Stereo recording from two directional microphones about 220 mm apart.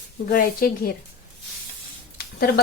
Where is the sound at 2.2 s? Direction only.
45° left (ahead or behind).